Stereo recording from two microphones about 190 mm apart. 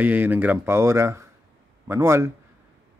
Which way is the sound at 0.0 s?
10° right (ahead or behind).